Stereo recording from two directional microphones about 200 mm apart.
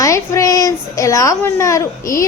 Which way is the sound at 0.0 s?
15° left (ahead or behind).